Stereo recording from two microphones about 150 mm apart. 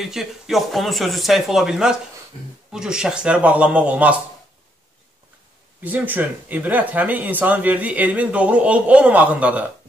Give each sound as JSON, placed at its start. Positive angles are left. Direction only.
{"t": 0.0, "sound": "speech", "side_deg": 0}
{"t": 2.3, "sound": "speech", "side_deg": 45}
{"t": 2.7, "sound": "speech", "side_deg": -5}
{"t": 5.8, "sound": "speech", "side_deg": -10}